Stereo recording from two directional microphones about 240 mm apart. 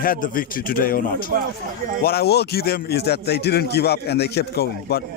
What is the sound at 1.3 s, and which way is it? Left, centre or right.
Speech, right.